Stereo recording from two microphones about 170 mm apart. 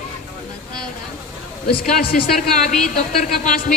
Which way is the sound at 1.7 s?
60° left (ahead or behind).